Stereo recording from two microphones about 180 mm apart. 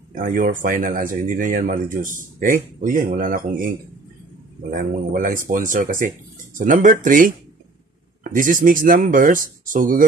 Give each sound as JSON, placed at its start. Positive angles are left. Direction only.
{"t": 0.1, "sound": "speech", "side_deg": -50}